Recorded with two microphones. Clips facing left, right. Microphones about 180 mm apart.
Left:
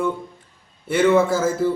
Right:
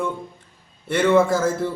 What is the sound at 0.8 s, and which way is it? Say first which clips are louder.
Speech: left 1 dB; 5° left (ahead or behind).